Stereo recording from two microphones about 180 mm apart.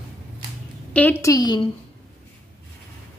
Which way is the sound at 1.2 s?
20° left (ahead or behind).